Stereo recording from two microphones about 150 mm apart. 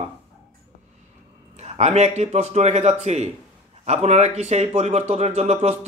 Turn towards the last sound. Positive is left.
turn(degrees=-45)  # may be behind; listen again after turning